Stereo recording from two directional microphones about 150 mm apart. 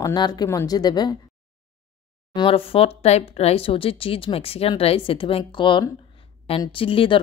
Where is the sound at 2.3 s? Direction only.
35° left (ahead or behind).